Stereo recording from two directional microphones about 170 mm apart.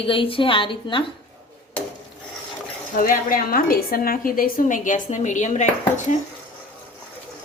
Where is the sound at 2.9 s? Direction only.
55° left (ahead or behind).